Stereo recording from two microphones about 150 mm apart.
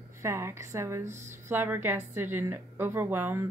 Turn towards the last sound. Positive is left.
turn(degrees=-15)  # may be behind; listen again after turning